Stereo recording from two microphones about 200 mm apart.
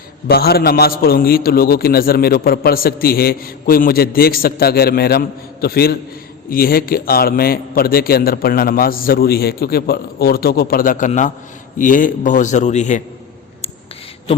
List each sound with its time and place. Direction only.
0.3 s a man's voice: 50° left (ahead or behind)